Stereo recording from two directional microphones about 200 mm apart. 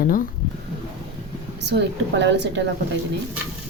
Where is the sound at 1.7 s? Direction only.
60° right (ahead or behind).